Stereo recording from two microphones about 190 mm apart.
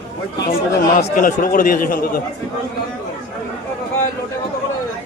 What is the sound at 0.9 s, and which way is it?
Speech, 45° left (ahead or behind).